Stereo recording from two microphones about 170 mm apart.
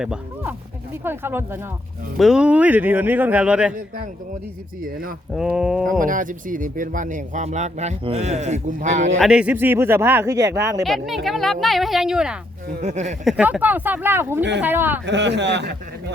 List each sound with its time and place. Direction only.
0.0 s speech: 5° right (ahead or behind)
2.1 s speech: centre (ahead or behind)
4.8 s speech: 55° right (ahead or behind)
5.3 s a woman's voice: 5° right (ahead or behind)
6.0 s speech: 50° right (ahead or behind)
9.2 s speech: 5° right (ahead or behind)
10.8 s a woman's voice: centre (ahead or behind)
12.8 s speech: 40° right (ahead or behind)
13.2 s speech: 5° right (ahead or behind)
15.0 s speech: 90° right